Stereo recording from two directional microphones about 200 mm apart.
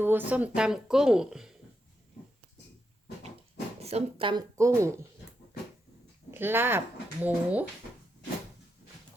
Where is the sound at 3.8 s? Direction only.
30° right (ahead or behind).